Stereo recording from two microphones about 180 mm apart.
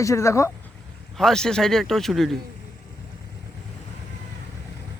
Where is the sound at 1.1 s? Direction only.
5° left (ahead or behind).